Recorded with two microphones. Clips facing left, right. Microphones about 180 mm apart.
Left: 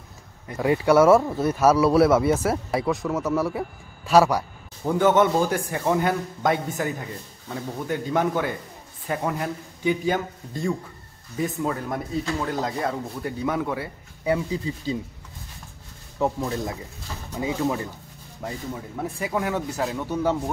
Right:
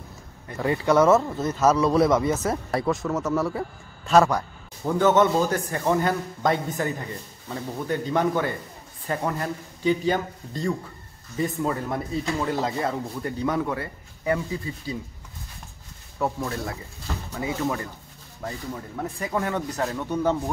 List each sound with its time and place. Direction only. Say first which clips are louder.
0.5 s speech: left 3 dB; 10° left (ahead or behind)
14.2 s speech: left 2 dB; 15° left (ahead or behind)
16.2 s speech: left 2 dB; 20° left (ahead or behind)